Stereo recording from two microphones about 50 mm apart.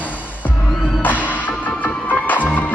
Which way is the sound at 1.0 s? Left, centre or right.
Left.